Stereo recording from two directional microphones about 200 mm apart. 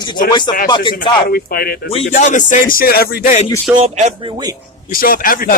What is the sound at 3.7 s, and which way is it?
Speech, 30° right (ahead or behind).